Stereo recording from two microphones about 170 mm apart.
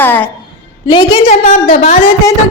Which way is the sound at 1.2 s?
45° left (ahead or behind).